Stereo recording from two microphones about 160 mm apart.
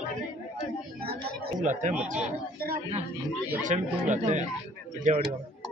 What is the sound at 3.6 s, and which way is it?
Speech, 50° right (ahead or behind).